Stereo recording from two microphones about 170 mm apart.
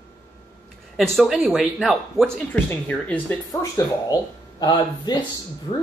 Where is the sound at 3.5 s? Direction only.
20° left (ahead or behind).